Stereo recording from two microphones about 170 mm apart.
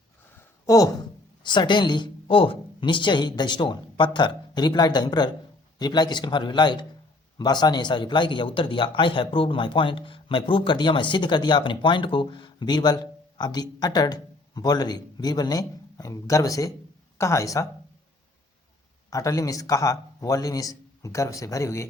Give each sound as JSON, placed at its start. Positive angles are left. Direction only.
{"t": 0.3, "sound": "a sound", "side_deg": 20}
{"t": 1.5, "sound": "a man's voice", "side_deg": 25}
{"t": 19.1, "sound": "a man's voice", "side_deg": 20}